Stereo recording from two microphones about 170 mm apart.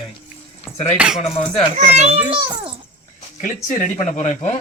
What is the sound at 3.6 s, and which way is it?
Speech, 45° left (ahead or behind).